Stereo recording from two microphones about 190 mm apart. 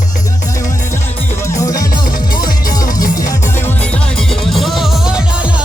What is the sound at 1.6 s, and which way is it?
Music, 20° left (ahead or behind).